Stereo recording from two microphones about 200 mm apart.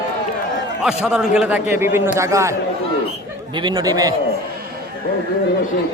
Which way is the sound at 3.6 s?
20° right (ahead or behind).